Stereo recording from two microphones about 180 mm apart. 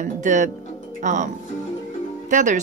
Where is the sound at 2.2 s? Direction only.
45° right (ahead or behind).